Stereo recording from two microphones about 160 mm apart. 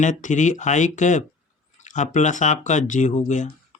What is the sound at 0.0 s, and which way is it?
Speech, 50° left (ahead or behind).